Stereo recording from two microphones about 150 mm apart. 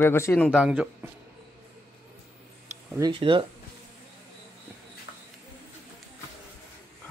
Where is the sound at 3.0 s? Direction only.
35° right (ahead or behind).